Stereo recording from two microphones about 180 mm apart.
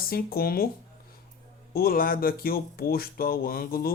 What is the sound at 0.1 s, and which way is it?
Speech, 55° left (ahead or behind).